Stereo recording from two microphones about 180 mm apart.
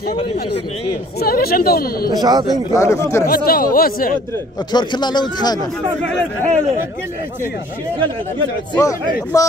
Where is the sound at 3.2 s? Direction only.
55° left (ahead or behind).